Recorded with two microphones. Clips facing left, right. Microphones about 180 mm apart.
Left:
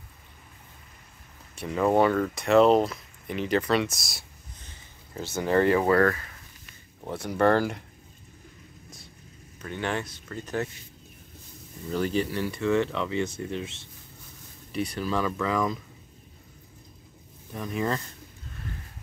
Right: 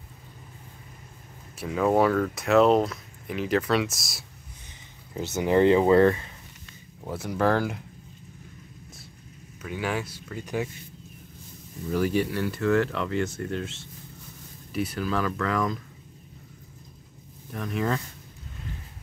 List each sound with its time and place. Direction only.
1.6 s speech: centre (ahead or behind)
4.6 s speech: 15° right (ahead or behind)
7.1 s speech: centre (ahead or behind)
9.6 s speech: 5° right (ahead or behind)
11.9 s speech: 5° right (ahead or behind)
17.5 s speech: centre (ahead or behind)